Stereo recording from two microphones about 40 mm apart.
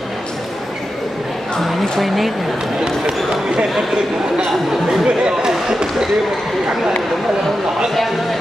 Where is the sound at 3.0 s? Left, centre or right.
Right.